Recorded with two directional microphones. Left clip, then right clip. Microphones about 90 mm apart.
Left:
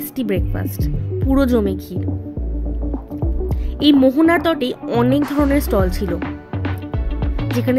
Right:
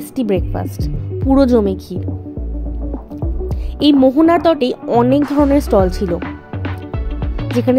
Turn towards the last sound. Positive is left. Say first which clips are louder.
# right 4 dB
turn(degrees=-15)  # may be behind; listen again after turning